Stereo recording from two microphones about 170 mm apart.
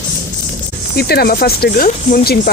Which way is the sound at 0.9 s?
65° left (ahead or behind).